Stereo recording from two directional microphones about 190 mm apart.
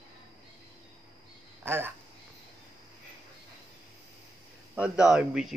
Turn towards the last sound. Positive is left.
turn(degrees=-5)  # may be behind; listen again after turning